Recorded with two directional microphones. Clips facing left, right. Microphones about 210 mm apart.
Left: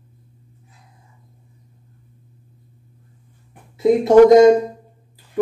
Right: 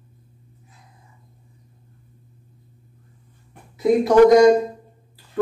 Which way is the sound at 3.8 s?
25° left (ahead or behind).